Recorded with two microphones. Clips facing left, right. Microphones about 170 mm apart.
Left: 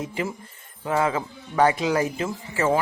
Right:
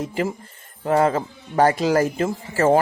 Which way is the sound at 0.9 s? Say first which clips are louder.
Right 5 dB; 40° right (ahead or behind).